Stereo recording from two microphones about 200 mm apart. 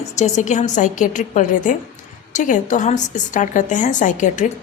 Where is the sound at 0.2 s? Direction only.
35° left (ahead or behind).